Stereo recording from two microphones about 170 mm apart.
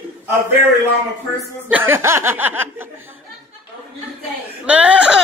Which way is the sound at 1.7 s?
10° right (ahead or behind).